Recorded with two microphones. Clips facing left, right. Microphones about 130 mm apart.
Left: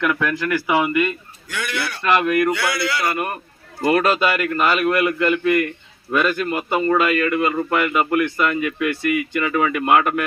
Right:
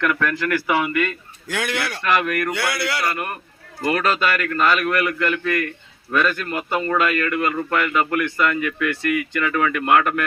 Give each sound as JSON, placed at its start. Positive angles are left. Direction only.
{"t": 0.0, "sound": "a man's voice", "side_deg": 10}
{"t": 1.5, "sound": "speech", "side_deg": -90}
{"t": 2.0, "sound": "a man's voice", "side_deg": 20}
{"t": 2.6, "sound": "speech", "side_deg": -60}
{"t": 3.0, "sound": "a man's voice", "side_deg": 20}